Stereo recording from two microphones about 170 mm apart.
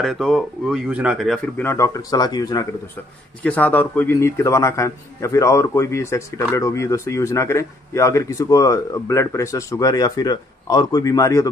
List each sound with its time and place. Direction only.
0.0 s speech: centre (ahead or behind)
1.6 s speech: 15° left (ahead or behind)
3.4 s a man's voice: 10° left (ahead or behind)